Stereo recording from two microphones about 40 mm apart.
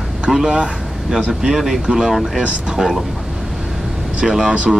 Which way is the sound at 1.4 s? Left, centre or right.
Centre.